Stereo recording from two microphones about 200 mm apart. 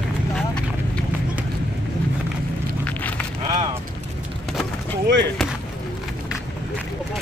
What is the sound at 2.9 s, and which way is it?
Livestock, 10° left (ahead or behind).